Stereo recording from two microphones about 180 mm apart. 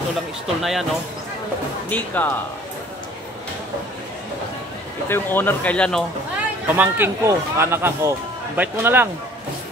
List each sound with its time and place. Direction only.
0.6 s speech: centre (ahead or behind)
1.9 s speech: 10° left (ahead or behind)
5.0 s speech: 10° left (ahead or behind)
6.8 s speech: 15° right (ahead or behind)